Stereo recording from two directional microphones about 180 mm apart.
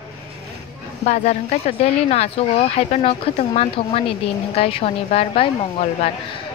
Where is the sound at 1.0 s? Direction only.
40° left (ahead or behind).